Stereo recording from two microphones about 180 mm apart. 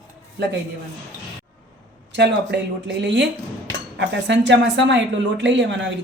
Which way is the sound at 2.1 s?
70° right (ahead or behind).